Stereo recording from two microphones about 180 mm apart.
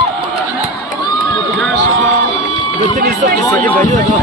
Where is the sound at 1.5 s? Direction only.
Centre (ahead or behind).